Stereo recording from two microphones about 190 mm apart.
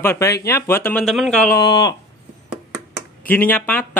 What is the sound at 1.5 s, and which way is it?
Speech, 20° left (ahead or behind).